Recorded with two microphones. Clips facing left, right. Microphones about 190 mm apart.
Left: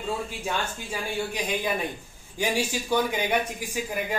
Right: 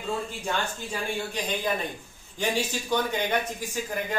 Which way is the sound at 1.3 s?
10° left (ahead or behind).